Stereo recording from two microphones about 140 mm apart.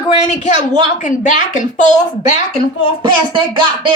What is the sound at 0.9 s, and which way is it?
A woman's voice, 60° left (ahead or behind).